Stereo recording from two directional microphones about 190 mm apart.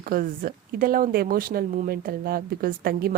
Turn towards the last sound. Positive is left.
turn(degrees=-50)  # may be behind; listen again after turning